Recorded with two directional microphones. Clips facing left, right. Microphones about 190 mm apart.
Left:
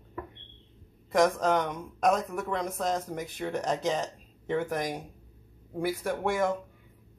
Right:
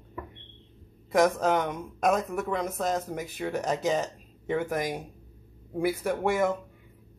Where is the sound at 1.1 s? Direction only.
5° right (ahead or behind).